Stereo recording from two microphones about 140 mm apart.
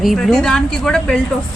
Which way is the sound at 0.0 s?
Centre (ahead or behind).